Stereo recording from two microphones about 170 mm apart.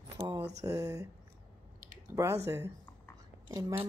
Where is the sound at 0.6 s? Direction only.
20° right (ahead or behind).